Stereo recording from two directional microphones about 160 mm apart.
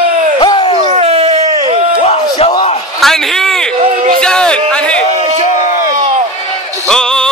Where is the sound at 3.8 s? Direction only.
35° right (ahead or behind).